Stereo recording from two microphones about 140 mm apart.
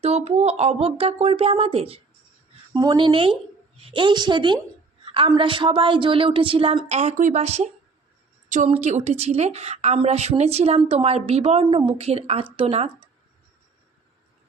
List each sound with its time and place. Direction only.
0.0 s a woman's voice: 50° right (ahead or behind)
2.7 s speech: 30° right (ahead or behind)
5.0 s a sound: 40° right (ahead or behind)
5.3 s a woman's voice: 35° right (ahead or behind)
11.6 s a woman's voice: 35° right (ahead or behind)